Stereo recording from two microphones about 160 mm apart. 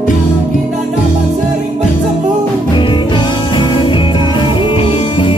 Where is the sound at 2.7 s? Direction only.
30° left (ahead or behind).